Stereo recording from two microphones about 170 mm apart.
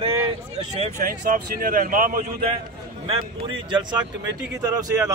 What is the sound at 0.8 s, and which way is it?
Speech, 50° right (ahead or behind).